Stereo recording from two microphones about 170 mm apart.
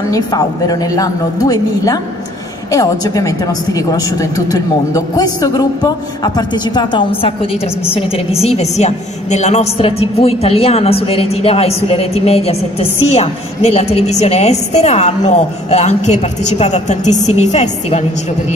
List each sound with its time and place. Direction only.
0.1 s a woman's voice: 20° left (ahead or behind); by 18.0 s 40° left (ahead or behind)